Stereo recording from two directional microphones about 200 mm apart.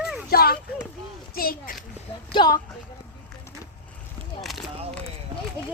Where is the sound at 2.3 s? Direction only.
20° left (ahead or behind).